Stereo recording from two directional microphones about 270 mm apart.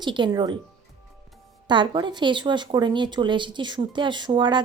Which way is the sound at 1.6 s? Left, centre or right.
Centre.